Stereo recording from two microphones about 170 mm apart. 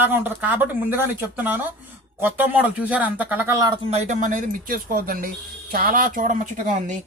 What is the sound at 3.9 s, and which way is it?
Speech, 45° right (ahead or behind).